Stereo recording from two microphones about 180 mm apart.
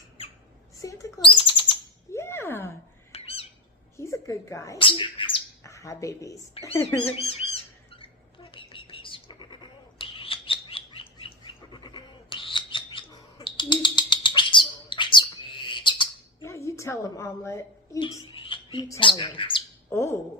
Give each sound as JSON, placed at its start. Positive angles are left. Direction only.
{"t": 0.8, "sound": "mouse", "side_deg": 20}
{"t": 1.2, "sound": "bird", "side_deg": 25}
{"t": 2.1, "sound": "a sound", "side_deg": 15}
{"t": 3.1, "sound": "squawk", "side_deg": 35}
{"t": 3.9, "sound": "cat", "side_deg": 15}
{"t": 4.8, "sound": "speech", "side_deg": 30}
{"t": 5.6, "sound": "speech", "side_deg": 15}
{"t": 7.2, "sound": "squawk", "side_deg": 35}
{"t": 10.0, "sound": "bird", "side_deg": 30}
{"t": 16.4, "sound": "a woman's voice", "side_deg": 15}
{"t": 18.3, "sound": "a sound", "side_deg": 30}
{"t": 18.9, "sound": "speech", "side_deg": 25}
{"t": 19.9, "sound": "speech", "side_deg": 15}